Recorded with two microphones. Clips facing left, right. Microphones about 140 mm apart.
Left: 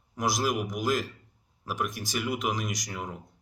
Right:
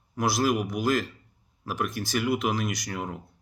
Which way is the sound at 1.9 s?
15° left (ahead or behind).